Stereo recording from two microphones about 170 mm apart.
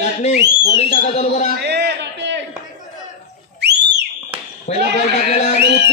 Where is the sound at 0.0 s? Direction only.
45° left (ahead or behind).